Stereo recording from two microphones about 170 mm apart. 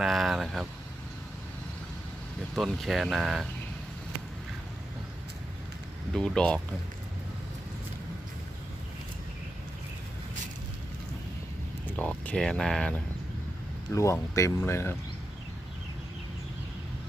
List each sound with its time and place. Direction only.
0.0 s a sound: centre (ahead or behind)
2.6 s speech: centre (ahead or behind)
6.1 s speech: 5° left (ahead or behind)
11.9 s speech: 10° left (ahead or behind)
13.9 s speech: 15° left (ahead or behind)